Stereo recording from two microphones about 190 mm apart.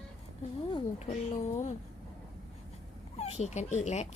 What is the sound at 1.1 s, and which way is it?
Speech, 40° left (ahead or behind).